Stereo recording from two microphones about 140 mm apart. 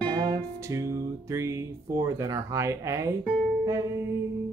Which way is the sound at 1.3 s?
20° right (ahead or behind).